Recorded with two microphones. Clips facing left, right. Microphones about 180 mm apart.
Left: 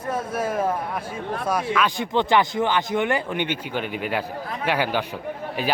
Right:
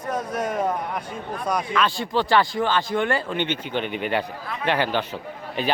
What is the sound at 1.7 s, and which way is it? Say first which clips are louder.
A man's voice: left 1 dB; 15° left (ahead or behind).